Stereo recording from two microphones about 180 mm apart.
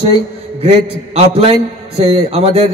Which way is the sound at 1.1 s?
35° right (ahead or behind).